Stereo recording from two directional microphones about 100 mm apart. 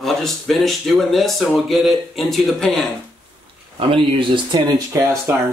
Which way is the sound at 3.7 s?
60° right (ahead or behind).